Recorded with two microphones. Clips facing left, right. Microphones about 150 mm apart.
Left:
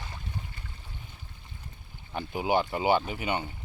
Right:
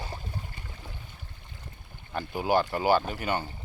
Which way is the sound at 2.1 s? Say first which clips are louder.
Right 1 dB; 15° left (ahead or behind).